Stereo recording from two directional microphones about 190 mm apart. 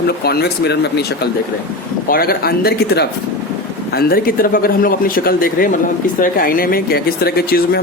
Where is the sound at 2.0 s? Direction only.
50° left (ahead or behind).